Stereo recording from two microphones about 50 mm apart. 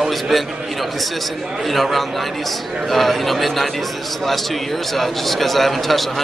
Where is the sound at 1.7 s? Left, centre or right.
Centre.